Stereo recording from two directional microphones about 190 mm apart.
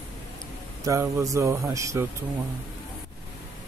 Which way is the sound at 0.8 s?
15° right (ahead or behind).